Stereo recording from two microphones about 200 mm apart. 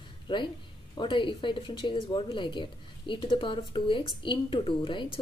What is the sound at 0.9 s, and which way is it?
Speech, 25° left (ahead or behind).